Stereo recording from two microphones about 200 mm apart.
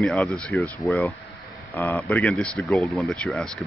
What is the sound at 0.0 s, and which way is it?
Speech, 5° left (ahead or behind).